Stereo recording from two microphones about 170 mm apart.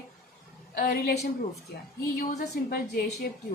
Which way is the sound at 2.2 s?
60° left (ahead or behind).